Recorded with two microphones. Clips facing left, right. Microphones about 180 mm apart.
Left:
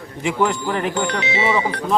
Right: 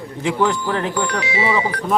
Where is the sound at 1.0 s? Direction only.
25° left (ahead or behind).